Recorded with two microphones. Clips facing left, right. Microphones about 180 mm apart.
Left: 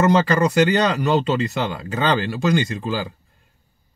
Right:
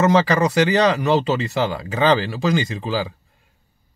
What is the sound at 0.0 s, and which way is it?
Speech, centre (ahead or behind).